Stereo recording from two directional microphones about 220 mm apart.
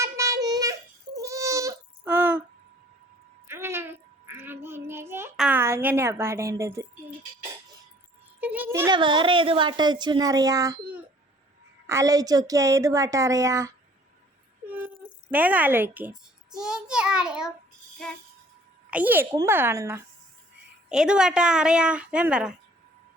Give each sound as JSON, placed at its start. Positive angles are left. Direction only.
{"t": 0.0, "sound": "a sound", "side_deg": -15}
{"t": 3.4, "sound": "child singing", "side_deg": -10}
{"t": 8.4, "sound": "a woman's voice", "side_deg": -5}
{"t": 14.8, "sound": "a child's voice", "side_deg": -5}